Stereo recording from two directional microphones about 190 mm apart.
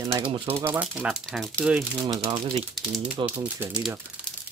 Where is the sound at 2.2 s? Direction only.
30° right (ahead or behind).